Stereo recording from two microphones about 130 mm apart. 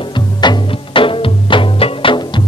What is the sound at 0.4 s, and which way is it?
Music, 40° left (ahead or behind).